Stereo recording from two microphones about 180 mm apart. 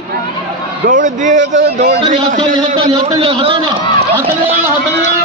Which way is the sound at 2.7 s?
30° right (ahead or behind).